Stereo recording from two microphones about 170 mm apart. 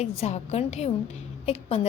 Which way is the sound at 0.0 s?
40° left (ahead or behind).